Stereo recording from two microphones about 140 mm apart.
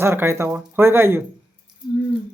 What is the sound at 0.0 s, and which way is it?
Speech, 20° right (ahead or behind).